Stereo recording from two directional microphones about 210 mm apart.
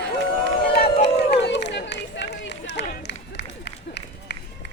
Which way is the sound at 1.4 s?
55° left (ahead or behind).